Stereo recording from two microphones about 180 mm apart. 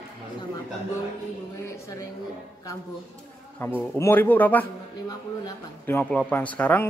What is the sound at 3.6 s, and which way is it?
Speech, 10° left (ahead or behind).